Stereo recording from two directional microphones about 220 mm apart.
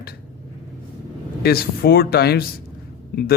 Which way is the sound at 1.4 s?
45° left (ahead or behind).